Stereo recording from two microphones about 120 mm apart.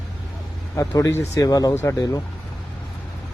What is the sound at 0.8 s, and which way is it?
Speech, 25° left (ahead or behind).